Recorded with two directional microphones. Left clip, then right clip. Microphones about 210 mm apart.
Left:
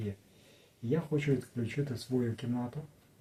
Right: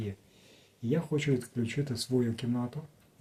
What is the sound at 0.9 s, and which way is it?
Speech, 35° right (ahead or behind).